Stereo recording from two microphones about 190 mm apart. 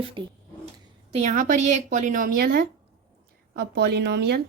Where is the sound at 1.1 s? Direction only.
40° right (ahead or behind).